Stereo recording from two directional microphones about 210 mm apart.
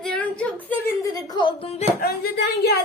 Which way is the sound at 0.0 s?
5° left (ahead or behind).